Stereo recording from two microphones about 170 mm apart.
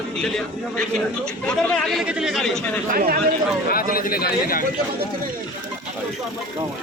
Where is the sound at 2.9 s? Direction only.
60° right (ahead or behind).